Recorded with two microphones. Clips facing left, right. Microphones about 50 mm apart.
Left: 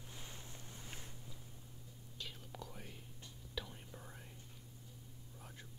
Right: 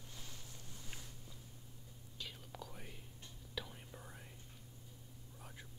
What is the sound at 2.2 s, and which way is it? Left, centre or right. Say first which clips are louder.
Whispering: even; centre.